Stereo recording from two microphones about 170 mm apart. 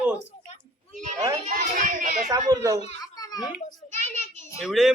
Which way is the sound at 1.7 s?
50° right (ahead or behind).